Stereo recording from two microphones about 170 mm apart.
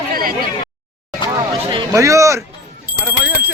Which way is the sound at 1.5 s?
30° right (ahead or behind).